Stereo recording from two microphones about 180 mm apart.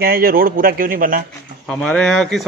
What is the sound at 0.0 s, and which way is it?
Speech, 55° right (ahead or behind).